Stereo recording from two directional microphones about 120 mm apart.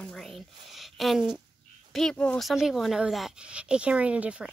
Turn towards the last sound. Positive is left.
turn(degrees=-10)  # may be behind; listen again after turning